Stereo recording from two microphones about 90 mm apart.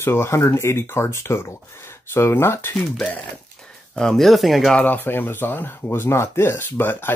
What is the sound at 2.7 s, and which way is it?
Speech, 10° left (ahead or behind).